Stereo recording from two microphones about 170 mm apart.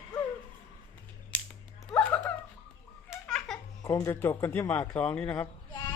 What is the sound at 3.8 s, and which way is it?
Speech, 20° left (ahead or behind).